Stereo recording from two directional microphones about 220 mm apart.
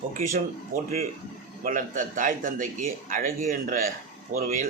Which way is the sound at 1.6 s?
35° right (ahead or behind).